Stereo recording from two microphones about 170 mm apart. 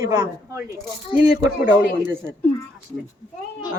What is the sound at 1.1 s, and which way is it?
A woman's voice, 10° right (ahead or behind).